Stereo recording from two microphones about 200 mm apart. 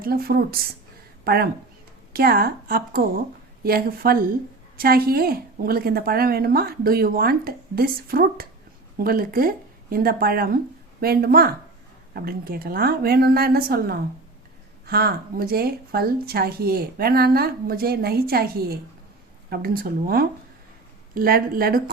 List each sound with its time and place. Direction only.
0.0 s speech: 50° right (ahead or behind)